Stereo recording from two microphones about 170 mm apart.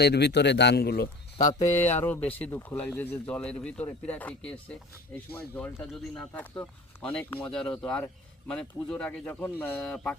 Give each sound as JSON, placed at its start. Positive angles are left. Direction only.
{"t": 0.0, "sound": "a man's voice", "side_deg": 75}
{"t": 1.5, "sound": "speech", "side_deg": 15}